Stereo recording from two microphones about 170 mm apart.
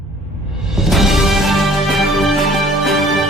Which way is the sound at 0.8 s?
Centre (ahead or behind).